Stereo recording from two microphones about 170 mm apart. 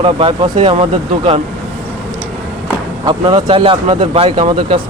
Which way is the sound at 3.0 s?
25° right (ahead or behind).